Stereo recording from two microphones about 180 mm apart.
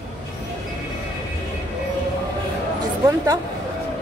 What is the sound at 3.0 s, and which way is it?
Speech, 15° right (ahead or behind).